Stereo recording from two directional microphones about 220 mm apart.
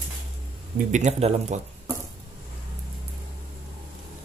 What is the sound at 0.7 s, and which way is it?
Speech, 30° right (ahead or behind).